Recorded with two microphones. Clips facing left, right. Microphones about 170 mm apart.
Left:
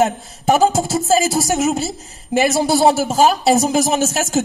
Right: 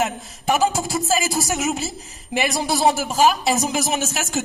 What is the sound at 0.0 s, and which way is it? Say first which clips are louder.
Speech: left 6 dB; 40° left (ahead or behind).